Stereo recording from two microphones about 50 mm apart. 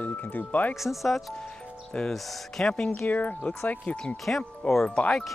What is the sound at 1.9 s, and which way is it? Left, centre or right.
Speech, centre.